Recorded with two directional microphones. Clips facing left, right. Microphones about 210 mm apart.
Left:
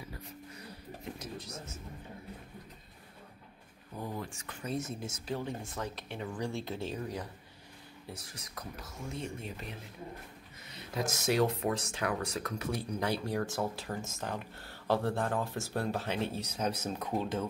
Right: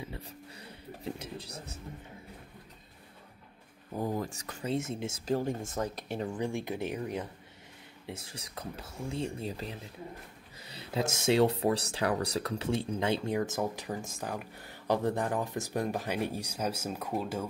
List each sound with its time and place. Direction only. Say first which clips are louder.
0.0 s a sound: right 3 dB; 30° right (ahead or behind)
3.9 s speech: right 6 dB; 45° right (ahead or behind)
4.6 s speech: right 4 dB; 25° right (ahead or behind)
5.2 s speech: right 7 dB; 45° right (ahead or behind)
6.3 s speech: right 3 dB; 15° right (ahead or behind)